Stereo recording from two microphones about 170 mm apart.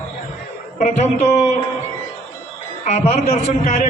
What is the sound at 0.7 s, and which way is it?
Speech, 45° left (ahead or behind).